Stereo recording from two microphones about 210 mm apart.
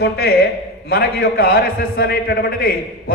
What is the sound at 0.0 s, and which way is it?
A man's voice, 50° left (ahead or behind).